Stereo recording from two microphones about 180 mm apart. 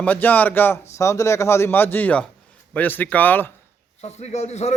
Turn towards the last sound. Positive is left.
turn(degrees=40)  # may be behind; listen again after turning